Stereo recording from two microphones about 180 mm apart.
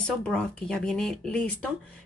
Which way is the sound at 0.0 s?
5° left (ahead or behind).